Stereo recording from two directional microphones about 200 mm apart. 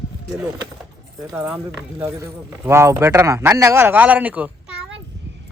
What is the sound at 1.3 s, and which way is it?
Speech, 5° right (ahead or behind).